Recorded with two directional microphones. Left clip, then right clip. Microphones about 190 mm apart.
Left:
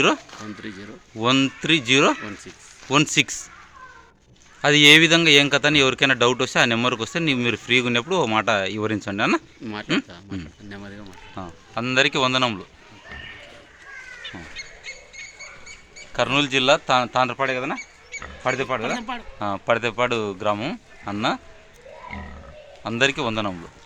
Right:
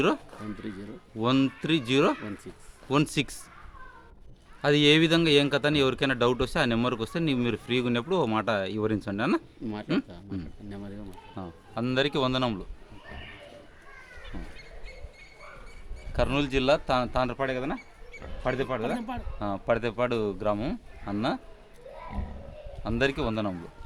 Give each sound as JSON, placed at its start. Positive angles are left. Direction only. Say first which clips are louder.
{"t": 0.6, "sound": "speech", "louder": "left 3 dB", "side_deg": -20}
{"t": 1.2, "sound": "speech", "louder": "left 6 dB", "side_deg": 5}
{"t": 4.6, "sound": "speech", "louder": "left 9 dB", "side_deg": 10}
{"t": 9.6, "sound": "speech", "louder": "left 5 dB", "side_deg": -20}
{"t": 11.4, "sound": "speech", "louder": "left 5 dB", "side_deg": 5}
{"t": 16.1, "sound": "speech", "louder": "left 7 dB", "side_deg": 10}
{"t": 18.9, "sound": "speech", "louder": "left 6 dB", "side_deg": -25}
{"t": 19.4, "sound": "speech", "louder": "left 6 dB", "side_deg": 10}
{"t": 22.8, "sound": "speech", "louder": "left 6 dB", "side_deg": 10}